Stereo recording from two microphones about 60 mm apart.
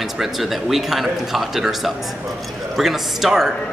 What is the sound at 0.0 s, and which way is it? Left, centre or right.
A man's voice, centre.